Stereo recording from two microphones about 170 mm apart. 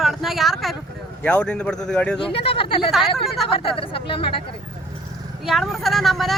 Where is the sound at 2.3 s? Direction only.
35° left (ahead or behind).